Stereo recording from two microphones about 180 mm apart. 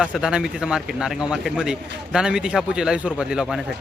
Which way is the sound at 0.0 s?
5° right (ahead or behind).